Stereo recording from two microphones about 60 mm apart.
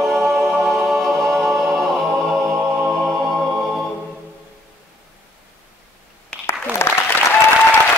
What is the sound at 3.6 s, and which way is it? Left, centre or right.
Choir, centre.